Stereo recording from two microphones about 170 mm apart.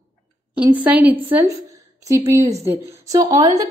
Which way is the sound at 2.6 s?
15° right (ahead or behind).